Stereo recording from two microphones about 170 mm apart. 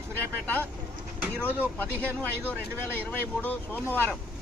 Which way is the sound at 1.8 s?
10° left (ahead or behind).